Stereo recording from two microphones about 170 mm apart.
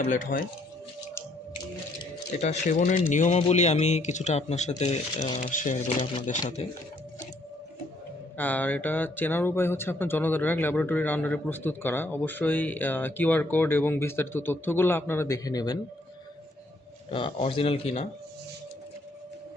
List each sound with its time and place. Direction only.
0.1 s speech: 55° left (ahead or behind)
2.4 s speech: 45° left (ahead or behind)
6.6 s speech: 35° left (ahead or behind)
8.4 s speech: 10° left (ahead or behind)
17.1 s speech: 30° left (ahead or behind)